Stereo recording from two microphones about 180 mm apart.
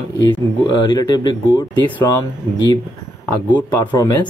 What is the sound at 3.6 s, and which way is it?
Speech, 15° left (ahead or behind).